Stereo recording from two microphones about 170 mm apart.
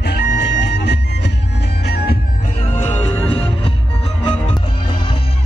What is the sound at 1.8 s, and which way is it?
Music, 70° left (ahead or behind).